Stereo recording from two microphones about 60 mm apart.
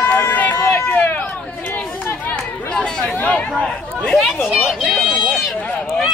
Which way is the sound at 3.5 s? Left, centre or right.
Centre.